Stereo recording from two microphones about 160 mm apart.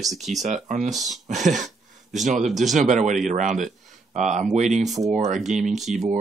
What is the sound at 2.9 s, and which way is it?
Speech, 50° right (ahead or behind).